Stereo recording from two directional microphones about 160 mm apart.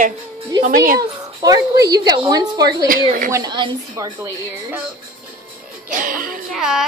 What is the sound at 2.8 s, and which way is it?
Speech, 60° right (ahead or behind).